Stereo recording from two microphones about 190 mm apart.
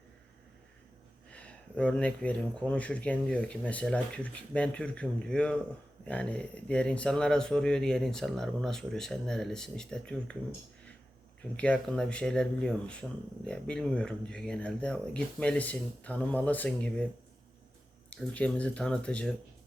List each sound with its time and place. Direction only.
1.3 s speech: 5° left (ahead or behind)
11.5 s speech: 5° left (ahead or behind)
18.1 s speech: 5° left (ahead or behind)